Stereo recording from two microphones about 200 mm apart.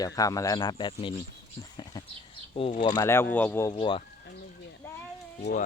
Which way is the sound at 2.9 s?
15° left (ahead or behind).